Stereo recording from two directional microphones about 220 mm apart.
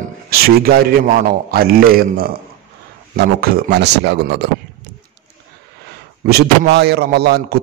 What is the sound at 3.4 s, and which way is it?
A man's voice, 45° right (ahead or behind).